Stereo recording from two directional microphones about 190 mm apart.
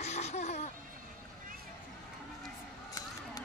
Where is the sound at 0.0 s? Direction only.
35° left (ahead or behind).